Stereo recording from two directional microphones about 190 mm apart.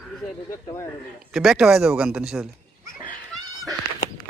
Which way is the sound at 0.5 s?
15° left (ahead or behind).